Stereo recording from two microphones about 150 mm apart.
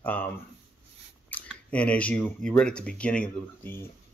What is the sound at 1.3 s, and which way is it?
Speech, 10° left (ahead or behind).